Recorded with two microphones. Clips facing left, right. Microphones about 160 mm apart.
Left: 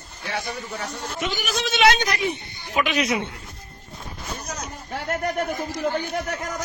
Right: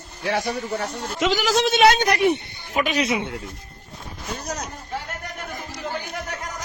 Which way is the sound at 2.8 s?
40° right (ahead or behind).